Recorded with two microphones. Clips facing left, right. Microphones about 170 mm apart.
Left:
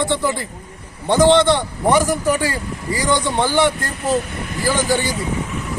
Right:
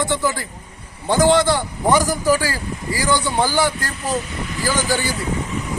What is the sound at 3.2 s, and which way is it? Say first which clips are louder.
Speech: left 2 dB; 5° right (ahead or behind).